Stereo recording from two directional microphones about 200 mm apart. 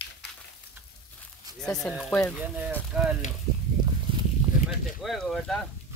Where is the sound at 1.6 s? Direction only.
Centre (ahead or behind).